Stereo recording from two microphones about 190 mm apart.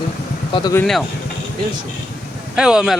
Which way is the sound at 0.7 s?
5° left (ahead or behind).